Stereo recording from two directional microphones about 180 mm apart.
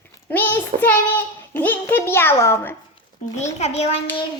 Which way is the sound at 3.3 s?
40° left (ahead or behind).